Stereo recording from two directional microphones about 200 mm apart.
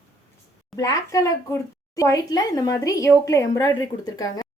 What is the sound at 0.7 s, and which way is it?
A woman's voice, 15° left (ahead or behind).